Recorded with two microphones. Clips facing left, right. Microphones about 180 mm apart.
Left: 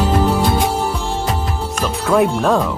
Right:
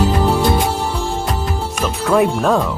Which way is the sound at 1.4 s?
Centre (ahead or behind).